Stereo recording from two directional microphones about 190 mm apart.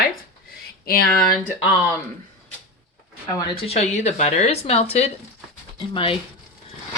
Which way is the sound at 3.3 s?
30° left (ahead or behind).